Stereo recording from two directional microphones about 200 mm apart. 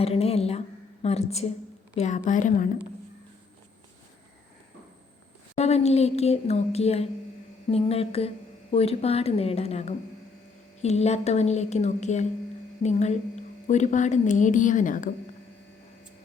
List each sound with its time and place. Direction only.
0.0 s a woman's voice: 30° left (ahead or behind)
5.5 s a woman's voice: 30° left (ahead or behind)
7.7 s mantra: 30° left (ahead or behind)
8.7 s a woman's voice: 30° left (ahead or behind)